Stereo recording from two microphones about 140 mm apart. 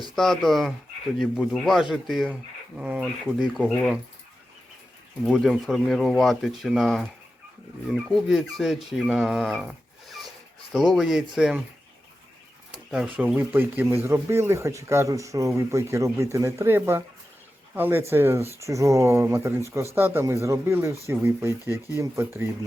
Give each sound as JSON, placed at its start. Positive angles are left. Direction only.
{"t": 0.2, "sound": "speech", "side_deg": 0}
{"t": 5.2, "sound": "speech", "side_deg": 0}
{"t": 12.9, "sound": "a man's voice", "side_deg": -10}